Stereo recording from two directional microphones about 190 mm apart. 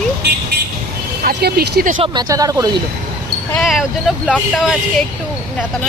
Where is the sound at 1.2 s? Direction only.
55° right (ahead or behind).